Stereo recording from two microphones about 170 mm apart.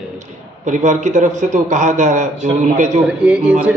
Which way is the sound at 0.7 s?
45° right (ahead or behind).